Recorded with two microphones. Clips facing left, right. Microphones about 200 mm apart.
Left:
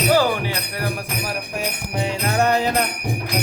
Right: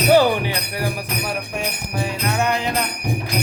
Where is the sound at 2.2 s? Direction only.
40° left (ahead or behind).